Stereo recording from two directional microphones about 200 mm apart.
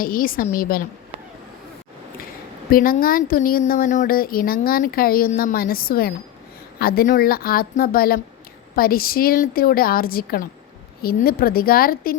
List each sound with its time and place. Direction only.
0.0 s speech: 45° left (ahead or behind)
2.6 s speech: 45° left (ahead or behind)